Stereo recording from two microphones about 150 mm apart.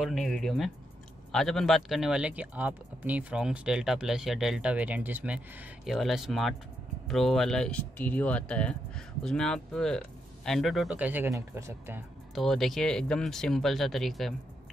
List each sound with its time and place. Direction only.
0.0 s speech: 5° left (ahead or behind)
11.0 s speech: 10° right (ahead or behind)
12.4 s speech: centre (ahead or behind)